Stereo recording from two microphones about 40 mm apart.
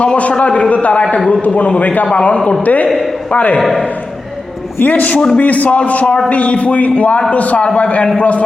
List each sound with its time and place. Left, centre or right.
0.0 s a man's voice: left
3.6 s a man's voice: centre
4.8 s a man's voice: left